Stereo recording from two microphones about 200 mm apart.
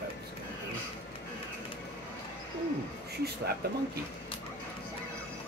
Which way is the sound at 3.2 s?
55° right (ahead or behind).